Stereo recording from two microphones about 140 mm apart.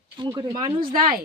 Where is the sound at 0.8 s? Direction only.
90° right.